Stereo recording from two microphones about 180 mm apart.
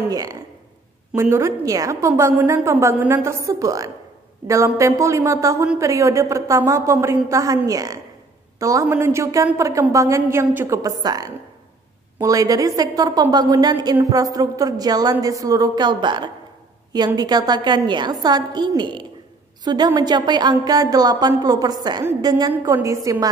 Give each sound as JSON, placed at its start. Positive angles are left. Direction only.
{"t": 0.0, "sound": "a woman's voice", "side_deg": -20}